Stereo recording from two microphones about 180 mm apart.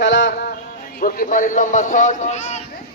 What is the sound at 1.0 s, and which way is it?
Speech, 50° left (ahead or behind).